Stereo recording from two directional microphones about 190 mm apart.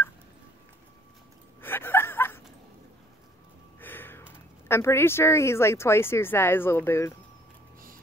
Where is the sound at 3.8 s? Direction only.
10° left (ahead or behind).